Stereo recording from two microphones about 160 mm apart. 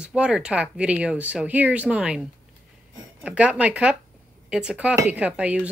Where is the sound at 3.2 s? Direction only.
5° right (ahead or behind).